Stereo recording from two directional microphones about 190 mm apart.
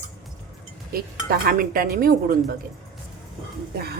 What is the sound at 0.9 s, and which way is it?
Speech, 50° right (ahead or behind).